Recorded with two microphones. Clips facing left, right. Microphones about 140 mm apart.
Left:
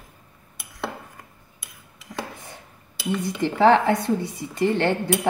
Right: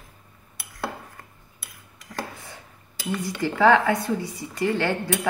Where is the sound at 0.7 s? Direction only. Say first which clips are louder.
Even; centre (ahead or behind).